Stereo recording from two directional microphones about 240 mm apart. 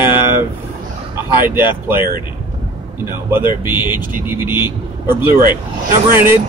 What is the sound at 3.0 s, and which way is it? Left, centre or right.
Speech, centre.